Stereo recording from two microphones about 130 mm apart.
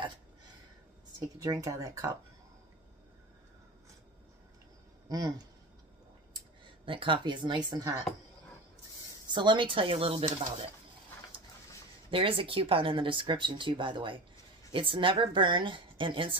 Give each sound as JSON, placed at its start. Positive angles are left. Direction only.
{"t": 1.4, "sound": "speech", "side_deg": -30}
{"t": 5.0, "sound": "a sound", "side_deg": -30}
{"t": 6.9, "sound": "speech", "side_deg": -40}
{"t": 9.3, "sound": "speech", "side_deg": -35}
{"t": 12.1, "sound": "speech", "side_deg": -45}